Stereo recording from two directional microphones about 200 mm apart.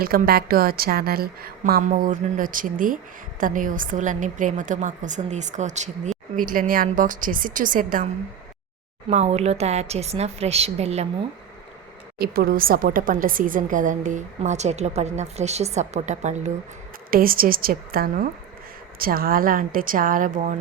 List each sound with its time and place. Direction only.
0.0 s a woman's voice: 50° right (ahead or behind); by 11.0 s 30° right (ahead or behind)
12.2 s a woman's voice: 50° right (ahead or behind)
17.1 s a woman's voice: 45° right (ahead or behind)